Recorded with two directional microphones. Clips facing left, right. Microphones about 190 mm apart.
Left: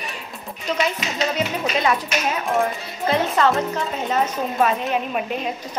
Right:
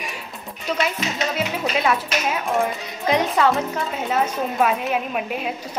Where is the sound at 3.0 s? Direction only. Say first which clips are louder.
Even; 15° right (ahead or behind).